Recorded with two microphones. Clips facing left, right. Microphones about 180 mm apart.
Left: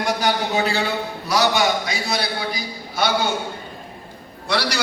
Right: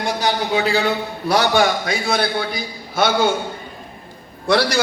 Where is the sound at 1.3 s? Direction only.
55° right (ahead or behind).